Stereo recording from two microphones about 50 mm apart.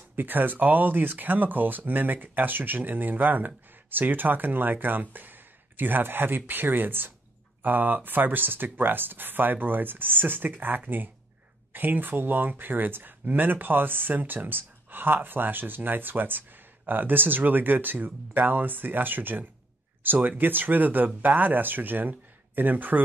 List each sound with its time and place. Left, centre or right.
0.1 s speech: right